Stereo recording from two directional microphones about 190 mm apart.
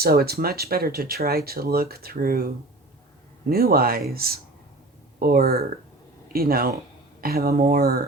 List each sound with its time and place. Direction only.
0.0 s speech: 55° right (ahead or behind)
3.5 s speech: 50° right (ahead or behind)